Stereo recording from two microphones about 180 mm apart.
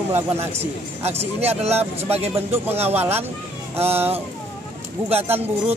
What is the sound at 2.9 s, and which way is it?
Speech, 10° right (ahead or behind).